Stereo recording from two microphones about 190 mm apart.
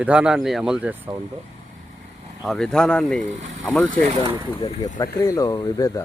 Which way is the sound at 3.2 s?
40° right (ahead or behind).